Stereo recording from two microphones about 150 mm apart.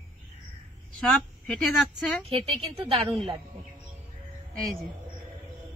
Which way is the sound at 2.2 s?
40° right (ahead or behind).